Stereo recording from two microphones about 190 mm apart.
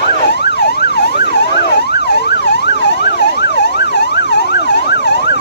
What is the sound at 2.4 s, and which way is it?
Emergency vehicle, 60° left (ahead or behind).